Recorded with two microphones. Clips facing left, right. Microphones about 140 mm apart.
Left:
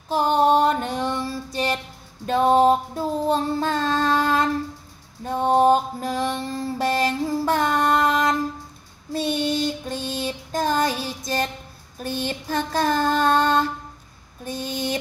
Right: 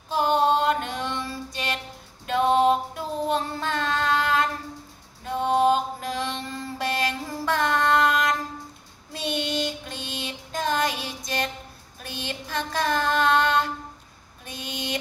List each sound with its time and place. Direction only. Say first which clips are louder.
0.1 s music: left 3 dB; 35° left (ahead or behind)
2.2 s child singing: left 3 dB; 35° left (ahead or behind)
5.2 s mantra: left 3 dB; 40° left (ahead or behind)
9.8 s music: left 7 dB; 40° left (ahead or behind)
12.0 s child singing: left 7 dB; 40° left (ahead or behind)
14.4 s a sound: left 9 dB; 35° left (ahead or behind)